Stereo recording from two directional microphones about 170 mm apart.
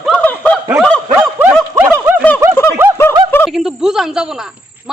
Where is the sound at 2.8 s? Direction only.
15° right (ahead or behind).